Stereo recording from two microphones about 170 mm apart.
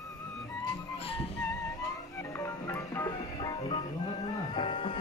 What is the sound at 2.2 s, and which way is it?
Music, 15° left (ahead or behind).